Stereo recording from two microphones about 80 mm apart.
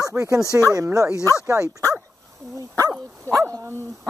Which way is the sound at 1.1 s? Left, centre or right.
Left.